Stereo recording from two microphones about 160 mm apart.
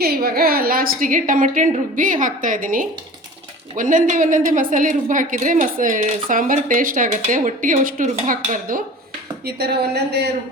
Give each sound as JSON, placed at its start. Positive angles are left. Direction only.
{"t": 0.0, "sound": "a woman's voice", "side_deg": -75}
{"t": 9.5, "sound": "speech", "side_deg": -85}